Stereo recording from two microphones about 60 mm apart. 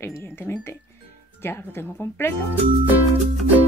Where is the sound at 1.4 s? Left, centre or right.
Left.